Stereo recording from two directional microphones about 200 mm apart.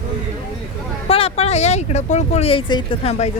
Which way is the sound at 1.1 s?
30° left (ahead or behind).